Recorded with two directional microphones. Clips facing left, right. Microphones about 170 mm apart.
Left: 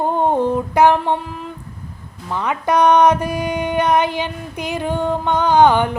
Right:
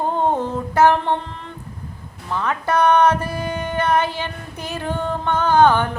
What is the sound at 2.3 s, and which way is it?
Speech, 15° left (ahead or behind).